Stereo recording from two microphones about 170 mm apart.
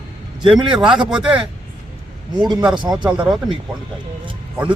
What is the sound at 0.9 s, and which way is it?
Speech, 5° right (ahead or behind).